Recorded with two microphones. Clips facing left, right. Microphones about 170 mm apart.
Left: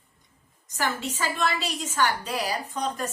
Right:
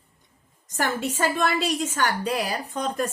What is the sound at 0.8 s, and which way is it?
A woman's voice, 50° right (ahead or behind).